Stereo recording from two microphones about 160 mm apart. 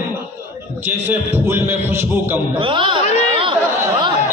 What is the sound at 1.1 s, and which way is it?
A man's voice, 15° right (ahead or behind).